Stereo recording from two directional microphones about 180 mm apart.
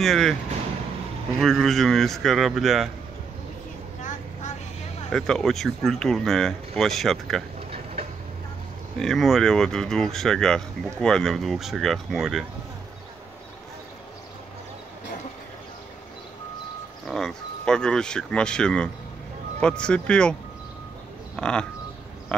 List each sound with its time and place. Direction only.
0.0 s speech: centre (ahead or behind)
1.4 s speech: centre (ahead or behind)
4.0 s vehicle: 45° left (ahead or behind)
5.1 s speech: 5° left (ahead or behind)
7.7 s vehicle: 35° right (ahead or behind)
9.0 s speech: centre (ahead or behind)
17.0 s speech: centre (ahead or behind)
21.4 s speech: 5° left (ahead or behind)